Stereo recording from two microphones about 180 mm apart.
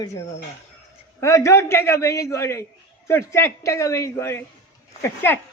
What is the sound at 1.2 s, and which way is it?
A man's voice, 15° left (ahead or behind).